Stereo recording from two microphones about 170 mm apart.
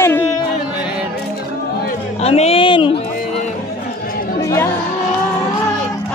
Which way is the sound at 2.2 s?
35° left (ahead or behind).